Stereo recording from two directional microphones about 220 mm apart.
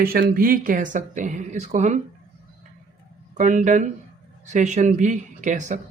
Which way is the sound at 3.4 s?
35° right (ahead or behind).